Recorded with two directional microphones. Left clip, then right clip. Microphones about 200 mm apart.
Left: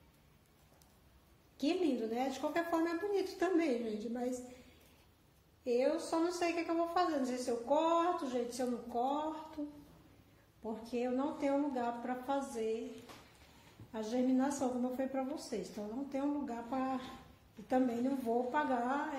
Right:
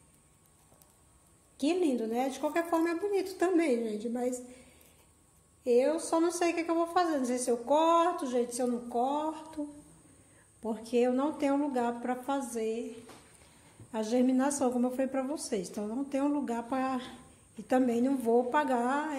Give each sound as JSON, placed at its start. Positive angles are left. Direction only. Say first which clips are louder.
{"t": 1.6, "sound": "a woman's voice", "louder": "right 5 dB", "side_deg": -25}
{"t": 5.6, "sound": "a woman's voice", "louder": "right 6 dB", "side_deg": -30}
{"t": 10.6, "sound": "a woman's voice", "louder": "right 10 dB", "side_deg": -40}
{"t": 13.9, "sound": "a woman's voice", "louder": "right 6 dB", "side_deg": -35}
{"t": 18.5, "sound": "a woman's voice", "louder": "right 6 dB", "side_deg": -35}